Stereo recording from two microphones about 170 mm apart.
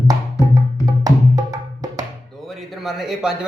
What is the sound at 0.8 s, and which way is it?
Music, 20° right (ahead or behind).